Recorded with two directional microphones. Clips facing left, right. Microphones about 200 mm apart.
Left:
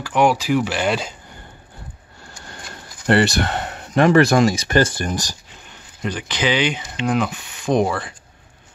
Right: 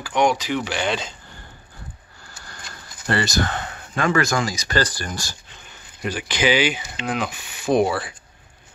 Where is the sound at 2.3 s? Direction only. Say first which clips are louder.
Left 4 dB; 25° left (ahead or behind).